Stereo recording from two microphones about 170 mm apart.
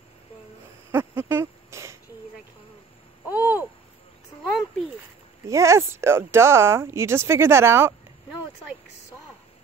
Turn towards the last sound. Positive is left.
turn(degrees=-15)  # may be behind; listen again after turning